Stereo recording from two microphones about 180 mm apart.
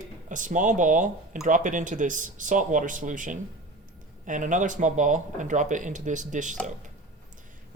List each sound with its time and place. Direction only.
0.3 s speech: 45° right (ahead or behind)